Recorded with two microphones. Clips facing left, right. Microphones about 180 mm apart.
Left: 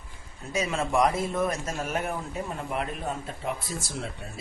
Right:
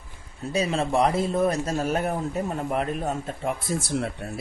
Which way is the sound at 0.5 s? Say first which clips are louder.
Right 3 dB; 35° right (ahead or behind).